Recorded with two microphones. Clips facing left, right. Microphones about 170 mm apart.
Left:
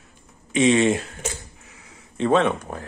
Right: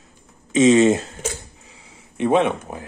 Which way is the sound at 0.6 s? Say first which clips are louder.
Right 4 dB; 40° right (ahead or behind).